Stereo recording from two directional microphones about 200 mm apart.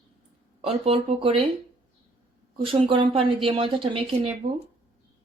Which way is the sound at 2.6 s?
25° right (ahead or behind).